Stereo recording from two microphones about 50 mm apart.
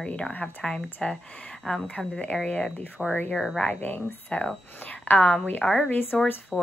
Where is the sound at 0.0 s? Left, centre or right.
Centre.